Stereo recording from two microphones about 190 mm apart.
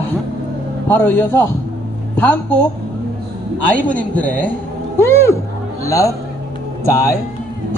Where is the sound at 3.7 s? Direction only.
10° left (ahead or behind).